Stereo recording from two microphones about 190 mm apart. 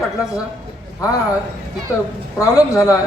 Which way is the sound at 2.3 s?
15° left (ahead or behind).